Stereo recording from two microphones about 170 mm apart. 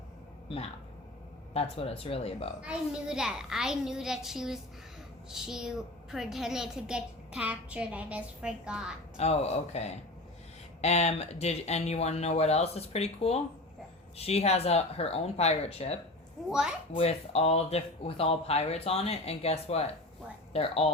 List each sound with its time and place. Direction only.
1.5 s speech: 35° left (ahead or behind)
2.6 s a child's voice: 5° right (ahead or behind)
9.1 s speech: 40° left (ahead or behind)
16.5 s a child's voice: 5° right (ahead or behind)
16.9 s speech: 35° left (ahead or behind)